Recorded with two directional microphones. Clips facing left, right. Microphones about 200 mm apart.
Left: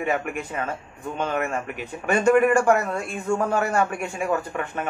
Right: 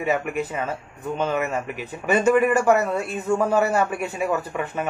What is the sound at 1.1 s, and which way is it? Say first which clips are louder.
A man's voice: right 2 dB; 5° right (ahead or behind).